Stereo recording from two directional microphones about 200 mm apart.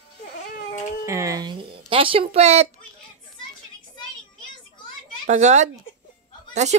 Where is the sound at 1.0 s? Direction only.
15° right (ahead or behind); by 2.7 s 30° right (ahead or behind).